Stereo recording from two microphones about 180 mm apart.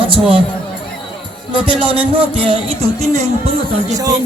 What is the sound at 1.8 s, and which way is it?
Speech, 30° right (ahead or behind).